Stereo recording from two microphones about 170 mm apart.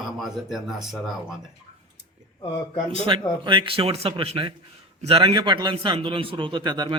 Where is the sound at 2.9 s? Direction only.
30° right (ahead or behind).